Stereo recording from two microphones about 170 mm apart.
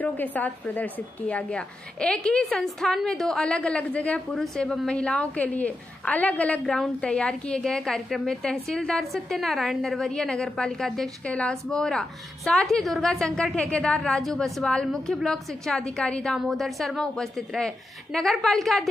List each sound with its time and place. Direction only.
0.0 s a woman's voice: 10° left (ahead or behind)